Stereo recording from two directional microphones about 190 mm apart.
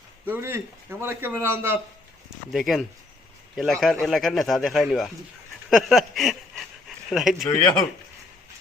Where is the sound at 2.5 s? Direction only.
Centre (ahead or behind).